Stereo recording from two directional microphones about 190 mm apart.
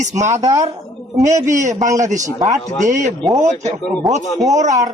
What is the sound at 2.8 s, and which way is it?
Speech, 40° right (ahead or behind).